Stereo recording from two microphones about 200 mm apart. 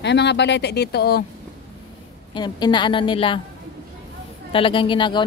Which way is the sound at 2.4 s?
20° left (ahead or behind).